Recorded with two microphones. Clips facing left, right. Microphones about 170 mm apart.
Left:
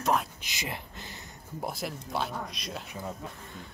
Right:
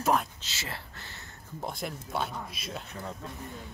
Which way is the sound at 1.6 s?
Centre (ahead or behind).